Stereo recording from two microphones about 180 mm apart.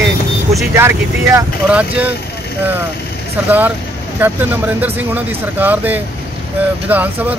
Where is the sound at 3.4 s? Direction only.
10° right (ahead or behind).